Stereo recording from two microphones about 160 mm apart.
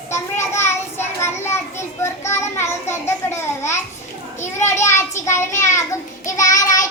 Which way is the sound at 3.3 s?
15° left (ahead or behind).